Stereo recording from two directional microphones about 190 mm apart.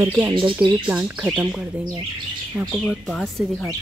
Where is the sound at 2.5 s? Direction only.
Centre (ahead or behind).